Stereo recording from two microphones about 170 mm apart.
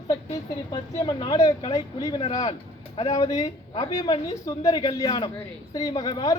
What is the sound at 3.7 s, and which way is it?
Speech, 35° left (ahead or behind).